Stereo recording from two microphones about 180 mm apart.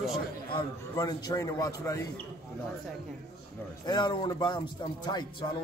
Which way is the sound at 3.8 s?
25° left (ahead or behind).